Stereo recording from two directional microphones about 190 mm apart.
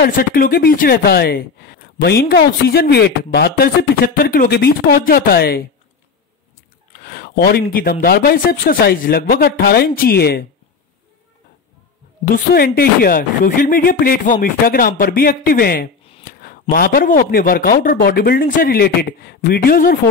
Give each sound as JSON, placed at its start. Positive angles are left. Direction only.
{"t": 0.0, "sound": "speech", "side_deg": 50}
{"t": 7.1, "sound": "a man's voice", "side_deg": 50}
{"t": 12.5, "sound": "a man's voice", "side_deg": 55}